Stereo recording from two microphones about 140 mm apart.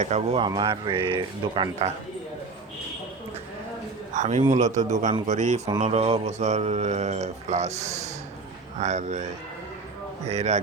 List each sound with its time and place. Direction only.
0.0 s speech: 50° right (ahead or behind)
0.4 s speech: 30° right (ahead or behind)
1.8 s speech: 45° right (ahead or behind)
4.1 s speech: 55° right (ahead or behind)